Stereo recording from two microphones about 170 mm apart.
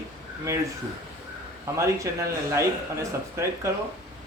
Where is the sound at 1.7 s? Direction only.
20° right (ahead or behind).